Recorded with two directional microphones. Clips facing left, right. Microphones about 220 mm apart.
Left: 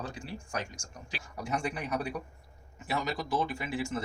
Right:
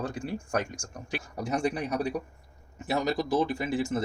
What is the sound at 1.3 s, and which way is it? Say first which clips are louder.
Speech: right 5 dB; 40° right (ahead or behind).